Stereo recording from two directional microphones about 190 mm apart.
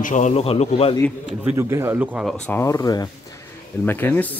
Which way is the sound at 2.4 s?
10° left (ahead or behind).